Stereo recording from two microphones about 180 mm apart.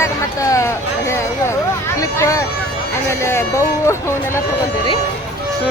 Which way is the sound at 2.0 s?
15° left (ahead or behind).